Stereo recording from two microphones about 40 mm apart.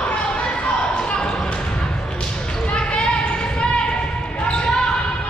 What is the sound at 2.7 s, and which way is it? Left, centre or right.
Basketball bounce, left.